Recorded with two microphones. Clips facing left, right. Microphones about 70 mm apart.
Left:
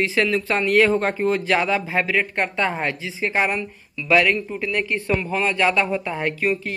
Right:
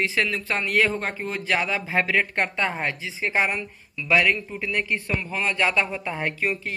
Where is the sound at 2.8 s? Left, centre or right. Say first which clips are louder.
Left 3 dB; centre.